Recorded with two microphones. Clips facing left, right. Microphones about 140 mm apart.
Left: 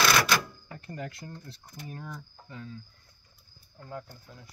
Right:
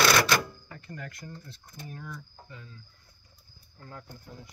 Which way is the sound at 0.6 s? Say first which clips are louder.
Left 3 dB; 20° left (ahead or behind).